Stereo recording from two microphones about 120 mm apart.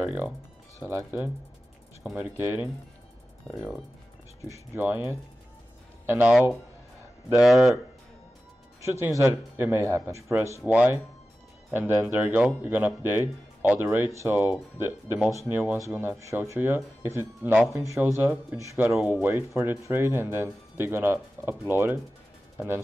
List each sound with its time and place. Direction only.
0.0 s speech: 15° right (ahead or behind)
4.5 s speech: 15° right (ahead or behind)
7.3 s speech: centre (ahead or behind)
8.8 s speech: 25° right (ahead or behind)
10.7 s speech: 10° right (ahead or behind)